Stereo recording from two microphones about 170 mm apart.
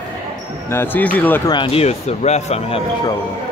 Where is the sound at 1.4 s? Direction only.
30° left (ahead or behind).